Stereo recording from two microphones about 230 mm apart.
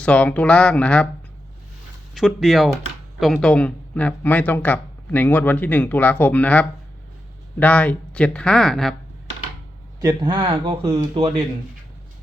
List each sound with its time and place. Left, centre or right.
0.0 s speech: centre
2.1 s speech: centre
10.0 s speech: centre